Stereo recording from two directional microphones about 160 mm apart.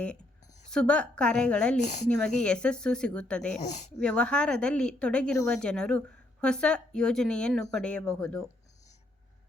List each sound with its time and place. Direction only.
0.7 s a woman's voice: 5° left (ahead or behind)
1.8 s speech: 50° left (ahead or behind)
2.4 s speech: 5° left (ahead or behind)
3.6 s speech: 45° left (ahead or behind)
4.0 s speech: 5° left (ahead or behind)